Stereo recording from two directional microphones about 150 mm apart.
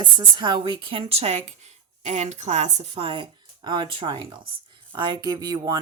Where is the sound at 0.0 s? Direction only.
30° right (ahead or behind).